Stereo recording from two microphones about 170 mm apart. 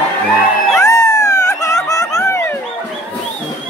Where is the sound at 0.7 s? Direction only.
20° left (ahead or behind).